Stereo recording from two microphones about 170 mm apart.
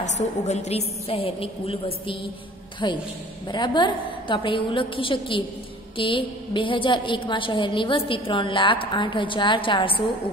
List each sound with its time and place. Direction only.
0.0 s a woman's voice: 40° left (ahead or behind)
2.8 s a woman's voice: 25° left (ahead or behind)